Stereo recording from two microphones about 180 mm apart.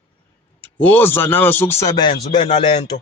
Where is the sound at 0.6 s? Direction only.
10° left (ahead or behind); by 2.9 s 25° left (ahead or behind).